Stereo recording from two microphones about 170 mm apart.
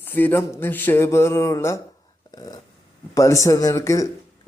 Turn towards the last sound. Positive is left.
turn(degrees=20)  # may be behind; listen again after turning